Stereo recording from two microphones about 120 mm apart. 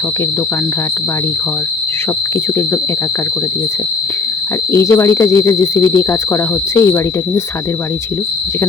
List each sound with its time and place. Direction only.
4.7 s speech: 25° left (ahead or behind)